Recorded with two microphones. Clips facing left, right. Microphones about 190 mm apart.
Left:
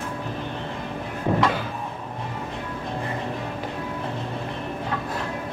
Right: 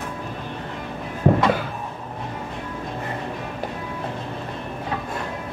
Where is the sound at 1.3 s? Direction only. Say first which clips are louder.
Right 5 dB; 45° right (ahead or behind).